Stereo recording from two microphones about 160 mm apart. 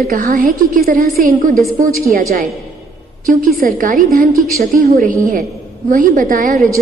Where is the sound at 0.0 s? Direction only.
65° right (ahead or behind).